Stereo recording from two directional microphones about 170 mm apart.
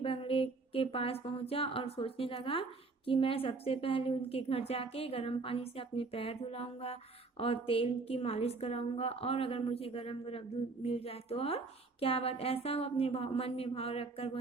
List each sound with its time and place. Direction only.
0.0 s a woman's voice: 35° left (ahead or behind)